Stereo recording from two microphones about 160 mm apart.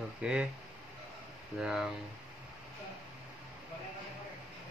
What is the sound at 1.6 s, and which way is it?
Speech, centre (ahead or behind).